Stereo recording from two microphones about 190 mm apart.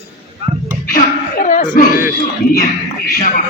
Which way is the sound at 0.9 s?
45° left (ahead or behind).